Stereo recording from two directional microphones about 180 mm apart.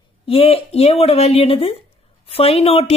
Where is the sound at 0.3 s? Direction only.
30° left (ahead or behind).